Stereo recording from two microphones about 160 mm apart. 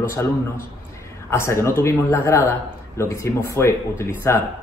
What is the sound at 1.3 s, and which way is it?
A man's voice, 15° left (ahead or behind).